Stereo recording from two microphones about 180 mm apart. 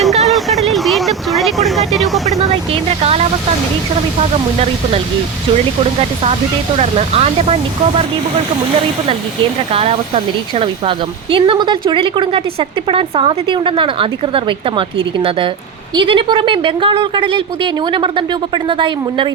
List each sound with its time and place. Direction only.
0.0 s vehicle: centre (ahead or behind)
1.9 s speech: centre (ahead or behind)
6.7 s speech: 35° right (ahead or behind)
10.6 s speech: 30° right (ahead or behind)